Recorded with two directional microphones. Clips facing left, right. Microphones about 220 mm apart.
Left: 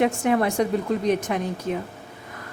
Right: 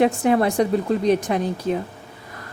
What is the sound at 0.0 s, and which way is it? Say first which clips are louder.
Speech: right 3 dB; 35° right (ahead or behind).